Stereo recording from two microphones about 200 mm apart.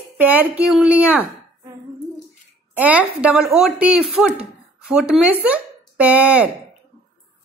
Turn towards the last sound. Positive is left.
turn(degrees=-5)  # may be behind; listen again after turning